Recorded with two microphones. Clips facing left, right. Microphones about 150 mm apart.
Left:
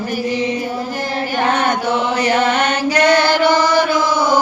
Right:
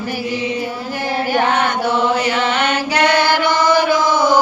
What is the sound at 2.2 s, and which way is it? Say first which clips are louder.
Chant: left 2 dB; 45° left (ahead or behind).